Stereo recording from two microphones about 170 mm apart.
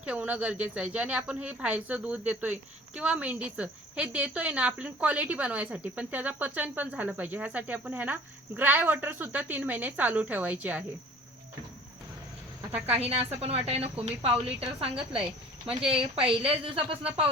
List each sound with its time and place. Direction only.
0.0 s a woman's voice: 10° right (ahead or behind)
13.4 s a woman's voice: 35° right (ahead or behind)